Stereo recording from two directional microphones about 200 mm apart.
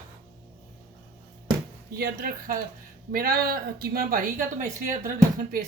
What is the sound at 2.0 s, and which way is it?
A woman's voice, 45° right (ahead or behind).